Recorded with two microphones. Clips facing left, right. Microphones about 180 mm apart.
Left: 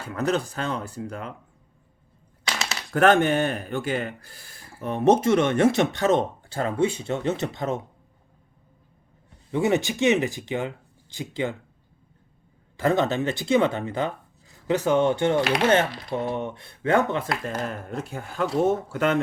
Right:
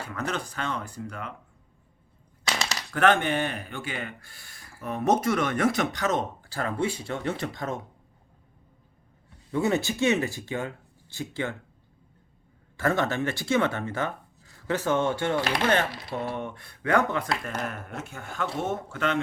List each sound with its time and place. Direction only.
0.1 s speech: 35° left (ahead or behind)
2.4 s a sound: centre (ahead or behind)
2.9 s speech: 40° left (ahead or behind); by 7.8 s 25° left (ahead or behind)
9.5 s speech: 15° left (ahead or behind)
12.7 s speech: 15° left (ahead or behind); by 19.2 s 40° left (ahead or behind)